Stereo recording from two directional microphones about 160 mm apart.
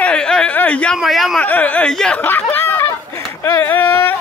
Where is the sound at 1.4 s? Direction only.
10° left (ahead or behind).